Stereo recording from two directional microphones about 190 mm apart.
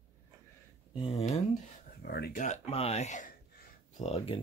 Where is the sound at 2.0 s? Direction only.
55° left (ahead or behind).